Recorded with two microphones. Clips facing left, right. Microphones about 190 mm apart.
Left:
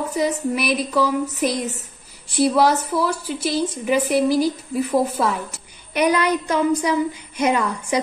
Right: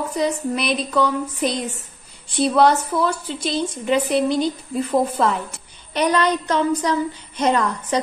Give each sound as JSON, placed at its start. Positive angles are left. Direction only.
{"t": 0.1, "sound": "a woman's voice", "side_deg": 5}
{"t": 2.4, "sound": "a woman's voice", "side_deg": 5}